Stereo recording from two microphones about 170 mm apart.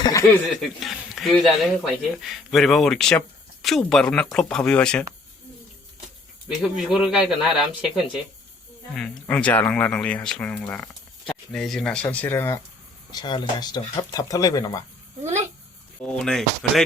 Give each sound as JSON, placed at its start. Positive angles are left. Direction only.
{"t": 0.0, "sound": "chuckle", "side_deg": 20}
{"t": 0.4, "sound": "speech", "side_deg": 0}
{"t": 6.5, "sound": "speech", "side_deg": 0}
{"t": 9.0, "sound": "speech", "side_deg": 5}
{"t": 13.1, "sound": "speech", "side_deg": 25}
{"t": 16.0, "sound": "speech", "side_deg": 5}